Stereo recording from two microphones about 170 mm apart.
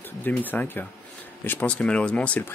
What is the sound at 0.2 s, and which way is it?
Speech, 10° left (ahead or behind).